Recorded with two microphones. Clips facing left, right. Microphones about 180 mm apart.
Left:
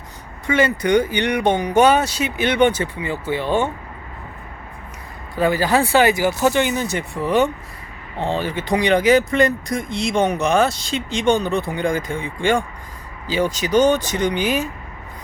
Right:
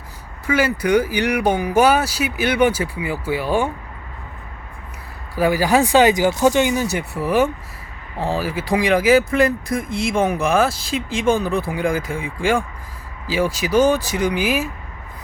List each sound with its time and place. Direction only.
0.4 s speech: 5° right (ahead or behind)
5.3 s speech: 10° right (ahead or behind)